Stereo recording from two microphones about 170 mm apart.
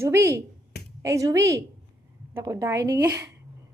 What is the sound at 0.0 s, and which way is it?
A woman's voice, 15° right (ahead or behind).